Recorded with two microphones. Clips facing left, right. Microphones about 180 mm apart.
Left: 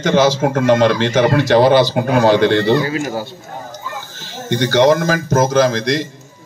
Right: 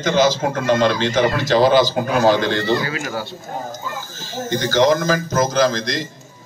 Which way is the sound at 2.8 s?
35° left (ahead or behind).